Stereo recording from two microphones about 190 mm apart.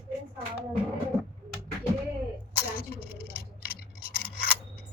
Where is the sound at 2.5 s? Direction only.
55° left (ahead or behind).